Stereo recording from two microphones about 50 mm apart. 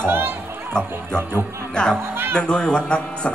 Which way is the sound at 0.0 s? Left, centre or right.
Right.